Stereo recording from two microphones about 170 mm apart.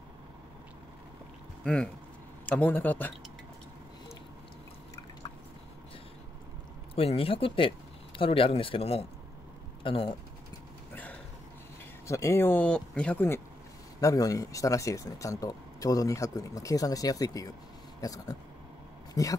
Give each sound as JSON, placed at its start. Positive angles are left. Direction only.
{"t": 1.6, "sound": "speech", "side_deg": 5}
{"t": 7.0, "sound": "speech", "side_deg": 35}
{"t": 12.1, "sound": "speech", "side_deg": 15}